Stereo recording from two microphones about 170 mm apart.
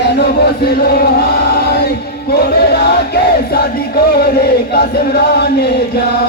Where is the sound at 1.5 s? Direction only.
70° left (ahead or behind).